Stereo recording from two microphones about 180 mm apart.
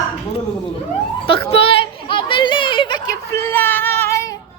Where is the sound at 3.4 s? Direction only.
10° left (ahead or behind).